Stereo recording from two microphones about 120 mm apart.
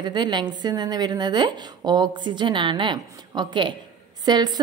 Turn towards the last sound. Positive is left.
turn(degrees=-35)  # may be behind; listen again after turning